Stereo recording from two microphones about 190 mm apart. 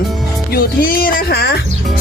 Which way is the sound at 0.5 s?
50° left (ahead or behind).